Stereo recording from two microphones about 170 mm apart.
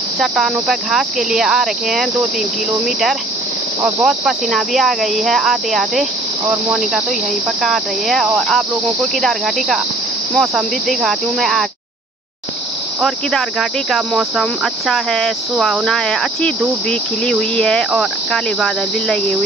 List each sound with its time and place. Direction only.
0.2 s speech: centre (ahead or behind)
3.8 s speech: centre (ahead or behind)
13.0 s speech: centre (ahead or behind)